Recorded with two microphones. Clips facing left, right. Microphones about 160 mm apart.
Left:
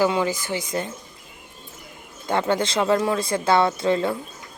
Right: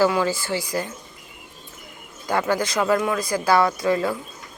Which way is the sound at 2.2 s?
25° left (ahead or behind).